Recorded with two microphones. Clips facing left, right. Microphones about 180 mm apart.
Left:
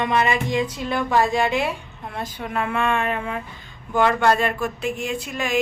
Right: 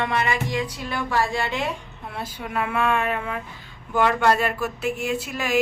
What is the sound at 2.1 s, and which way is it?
Speech, 10° right (ahead or behind).